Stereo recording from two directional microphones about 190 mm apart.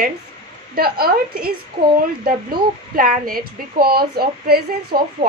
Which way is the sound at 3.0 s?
50° right (ahead or behind).